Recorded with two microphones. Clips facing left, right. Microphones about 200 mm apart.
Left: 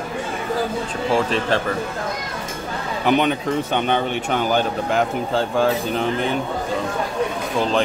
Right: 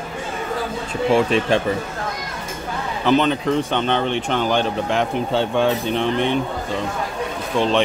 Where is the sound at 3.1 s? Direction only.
15° left (ahead or behind).